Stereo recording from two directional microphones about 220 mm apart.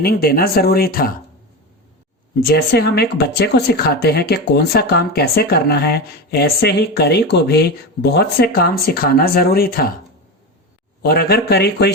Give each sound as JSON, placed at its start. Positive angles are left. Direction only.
{"t": 0.0, "sound": "speech", "side_deg": 45}
{"t": 2.5, "sound": "speech", "side_deg": 45}
{"t": 11.0, "sound": "speech", "side_deg": 45}